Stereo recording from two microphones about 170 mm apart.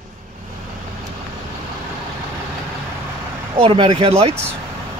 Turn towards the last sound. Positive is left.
turn(degrees=-35)  # may be behind; listen again after turning